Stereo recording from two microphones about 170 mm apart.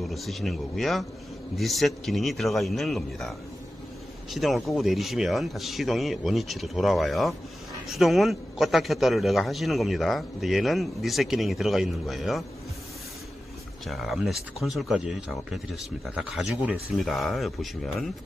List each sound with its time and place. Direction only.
0.0 s speech: centre (ahead or behind)
13.8 s speech: centre (ahead or behind)